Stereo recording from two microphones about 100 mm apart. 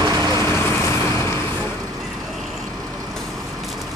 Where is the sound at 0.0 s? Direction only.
40° right (ahead or behind).